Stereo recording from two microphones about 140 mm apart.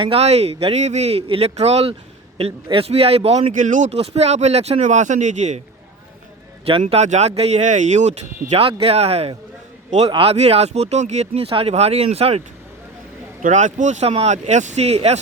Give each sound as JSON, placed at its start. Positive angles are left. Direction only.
{"t": 0.0, "sound": "speech", "side_deg": -45}
{"t": 3.5, "sound": "speech", "side_deg": -65}
{"t": 6.8, "sound": "speech", "side_deg": -55}
{"t": 13.4, "sound": "speech", "side_deg": -60}